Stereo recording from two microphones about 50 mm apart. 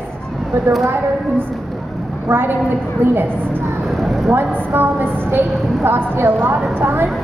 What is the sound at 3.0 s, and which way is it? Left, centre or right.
Speech, right.